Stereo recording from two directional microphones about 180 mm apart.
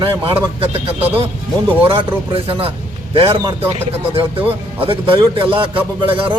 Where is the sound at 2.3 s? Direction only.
30° right (ahead or behind).